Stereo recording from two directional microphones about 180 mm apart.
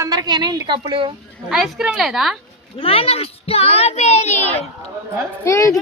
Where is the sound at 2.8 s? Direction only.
30° left (ahead or behind).